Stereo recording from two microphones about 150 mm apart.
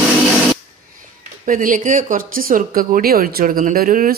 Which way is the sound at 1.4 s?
65° right (ahead or behind).